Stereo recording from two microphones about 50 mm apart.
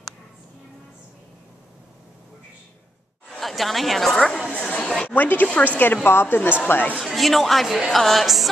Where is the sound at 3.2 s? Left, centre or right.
Centre.